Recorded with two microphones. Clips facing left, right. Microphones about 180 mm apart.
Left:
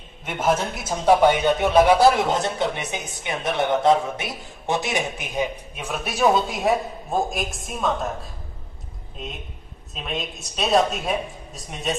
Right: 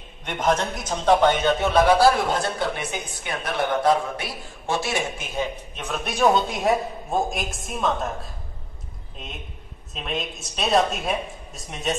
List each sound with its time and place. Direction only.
0.2 s speech: 5° left (ahead or behind)
2.0 s a woman's voice: 20° left (ahead or behind); by 11.9 s centre (ahead or behind)